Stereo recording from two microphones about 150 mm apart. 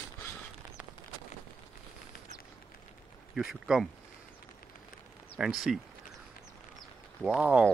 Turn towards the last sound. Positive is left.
turn(degrees=-10)  # may be behind; listen again after turning